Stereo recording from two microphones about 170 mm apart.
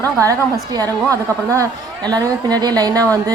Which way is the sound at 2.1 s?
25° right (ahead or behind).